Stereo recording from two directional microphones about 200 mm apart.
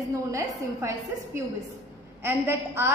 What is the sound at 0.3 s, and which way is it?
A woman's voice, 15° right (ahead or behind).